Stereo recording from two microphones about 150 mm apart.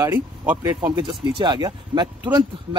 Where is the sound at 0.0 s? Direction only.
20° right (ahead or behind).